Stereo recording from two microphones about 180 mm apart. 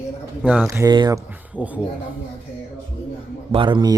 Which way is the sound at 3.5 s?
25° right (ahead or behind).